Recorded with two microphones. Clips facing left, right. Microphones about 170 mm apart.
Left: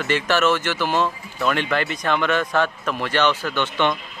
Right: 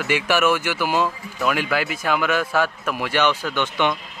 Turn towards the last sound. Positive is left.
turn(degrees=-10)  # may be behind; listen again after turning